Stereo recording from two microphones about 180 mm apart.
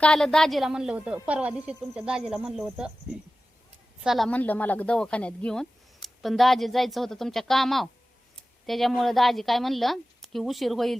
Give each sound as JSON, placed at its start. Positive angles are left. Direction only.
{"t": 0.0, "sound": "a woman's voice", "side_deg": 5}